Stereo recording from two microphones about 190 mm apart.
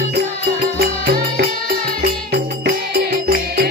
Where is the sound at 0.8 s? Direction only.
50° right (ahead or behind).